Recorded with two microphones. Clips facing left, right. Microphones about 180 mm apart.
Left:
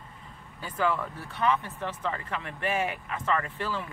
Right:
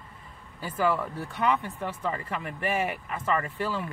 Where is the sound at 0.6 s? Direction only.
5° right (ahead or behind).